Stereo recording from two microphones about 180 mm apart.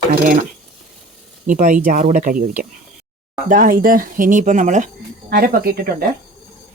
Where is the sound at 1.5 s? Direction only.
45° right (ahead or behind).